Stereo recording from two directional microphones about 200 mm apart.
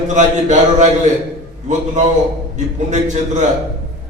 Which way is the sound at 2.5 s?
35° right (ahead or behind).